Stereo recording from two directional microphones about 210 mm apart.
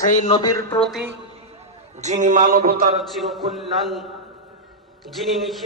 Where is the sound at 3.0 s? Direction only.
Centre (ahead or behind).